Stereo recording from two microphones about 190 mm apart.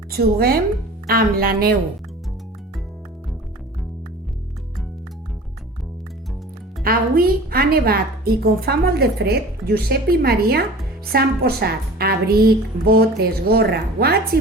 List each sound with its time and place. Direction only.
0.1 s speech: 55° right (ahead or behind)
6.8 s a woman's voice: 50° right (ahead or behind)